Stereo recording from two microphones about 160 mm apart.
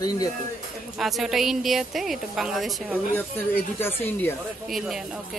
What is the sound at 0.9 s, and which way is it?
A woman's voice, centre (ahead or behind).